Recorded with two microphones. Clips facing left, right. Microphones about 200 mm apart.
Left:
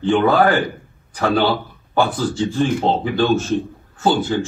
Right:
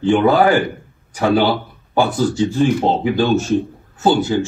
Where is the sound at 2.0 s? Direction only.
15° right (ahead or behind).